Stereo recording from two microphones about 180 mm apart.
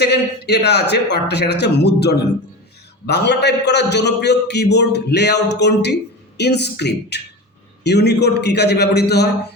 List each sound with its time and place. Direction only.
0.0 s a man's voice: 65° left (ahead or behind)